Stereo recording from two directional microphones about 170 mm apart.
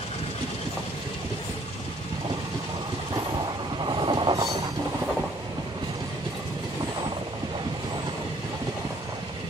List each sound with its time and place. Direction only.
3.8 s train: 25° right (ahead or behind)